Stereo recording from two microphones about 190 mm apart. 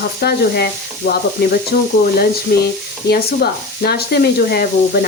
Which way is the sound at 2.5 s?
55° left (ahead or behind).